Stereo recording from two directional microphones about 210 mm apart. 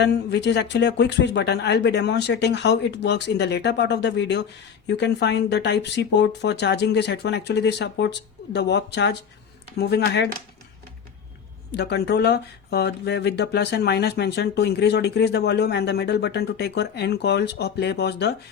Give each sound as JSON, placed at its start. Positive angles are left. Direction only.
{"t": 0.0, "sound": "speech", "side_deg": 55}
{"t": 11.7, "sound": "speech", "side_deg": 50}